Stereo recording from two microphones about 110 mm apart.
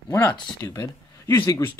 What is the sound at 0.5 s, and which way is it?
Speech, 35° left (ahead or behind).